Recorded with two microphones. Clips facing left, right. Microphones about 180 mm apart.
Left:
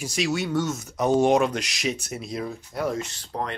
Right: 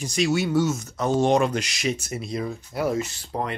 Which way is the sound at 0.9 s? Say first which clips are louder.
Left 4 dB; 15° left (ahead or behind).